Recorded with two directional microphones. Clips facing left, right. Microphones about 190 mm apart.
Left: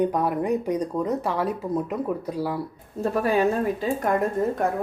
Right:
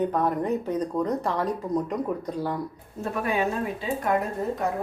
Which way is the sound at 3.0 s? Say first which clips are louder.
Left 5 dB; 35° left (ahead or behind).